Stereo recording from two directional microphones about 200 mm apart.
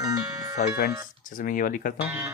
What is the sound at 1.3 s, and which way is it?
Speech, 45° left (ahead or behind).